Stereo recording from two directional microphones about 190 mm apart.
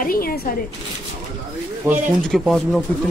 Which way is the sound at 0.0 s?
50° left (ahead or behind).